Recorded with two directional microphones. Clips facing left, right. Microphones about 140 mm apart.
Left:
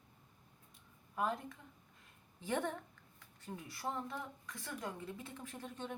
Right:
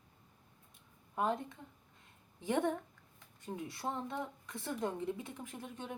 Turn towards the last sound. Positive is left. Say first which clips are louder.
# right 1 dB
turn(degrees=-10)  # may be behind; listen again after turning